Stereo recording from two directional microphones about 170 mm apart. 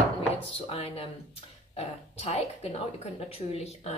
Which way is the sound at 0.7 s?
35° left (ahead or behind).